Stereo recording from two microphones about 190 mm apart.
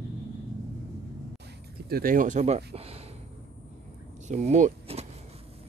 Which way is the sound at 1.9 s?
50° right (ahead or behind).